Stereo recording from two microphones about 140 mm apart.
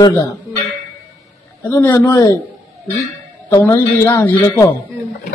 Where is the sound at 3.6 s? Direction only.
15° left (ahead or behind).